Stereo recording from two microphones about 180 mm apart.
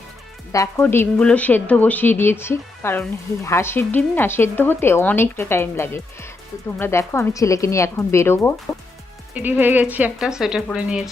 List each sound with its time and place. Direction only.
0.5 s speech: 15° left (ahead or behind)
9.3 s speech: 10° right (ahead or behind)